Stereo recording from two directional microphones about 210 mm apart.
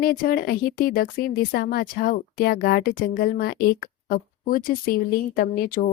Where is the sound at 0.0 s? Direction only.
45° left (ahead or behind).